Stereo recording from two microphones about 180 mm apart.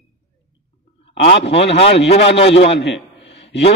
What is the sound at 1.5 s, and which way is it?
Speech, 35° left (ahead or behind).